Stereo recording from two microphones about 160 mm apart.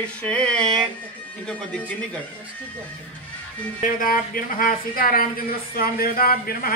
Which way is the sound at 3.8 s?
60° left (ahead or behind).